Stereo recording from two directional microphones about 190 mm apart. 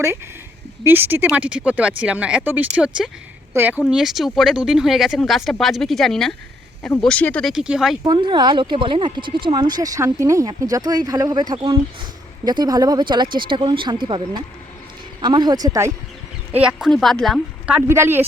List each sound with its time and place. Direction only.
0.9 s speech: 10° right (ahead or behind)
8.0 s speech: 25° right (ahead or behind)
16.5 s speech: 5° right (ahead or behind)